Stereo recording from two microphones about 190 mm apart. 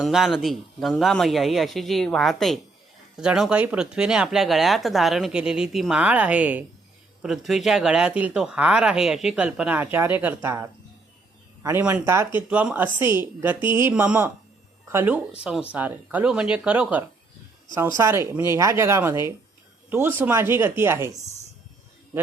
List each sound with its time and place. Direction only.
0.0 s speech: centre (ahead or behind)
13.6 s speech: 25° left (ahead or behind)
13.8 s speech: 5° right (ahead or behind)